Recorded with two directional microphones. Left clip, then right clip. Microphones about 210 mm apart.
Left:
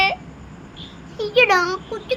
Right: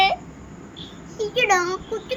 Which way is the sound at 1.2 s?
10° left (ahead or behind).